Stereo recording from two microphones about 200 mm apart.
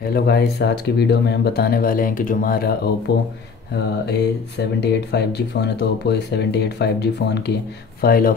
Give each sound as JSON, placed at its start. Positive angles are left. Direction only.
{"t": 0.0, "sound": "speech", "side_deg": 50}